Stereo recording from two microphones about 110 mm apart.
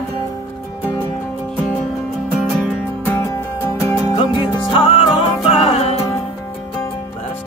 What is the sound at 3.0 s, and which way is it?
Music, 25° left (ahead or behind).